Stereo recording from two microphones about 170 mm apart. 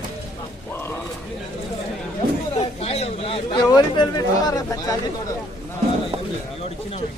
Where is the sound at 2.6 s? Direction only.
40° left (ahead or behind); by 5.0 s 20° left (ahead or behind).